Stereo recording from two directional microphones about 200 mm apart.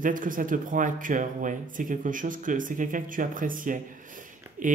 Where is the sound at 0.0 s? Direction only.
40° right (ahead or behind).